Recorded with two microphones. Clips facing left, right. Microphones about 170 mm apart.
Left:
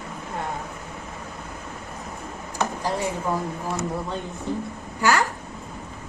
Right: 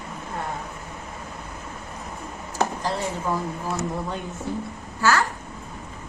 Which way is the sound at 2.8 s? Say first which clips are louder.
Left 1 dB; 10° left (ahead or behind).